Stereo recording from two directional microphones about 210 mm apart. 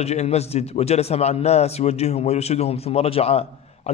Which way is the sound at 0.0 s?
30° left (ahead or behind).